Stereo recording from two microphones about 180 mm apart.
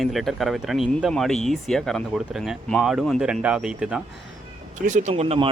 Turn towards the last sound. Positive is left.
turn(degrees=-30)  # may be behind; listen again after turning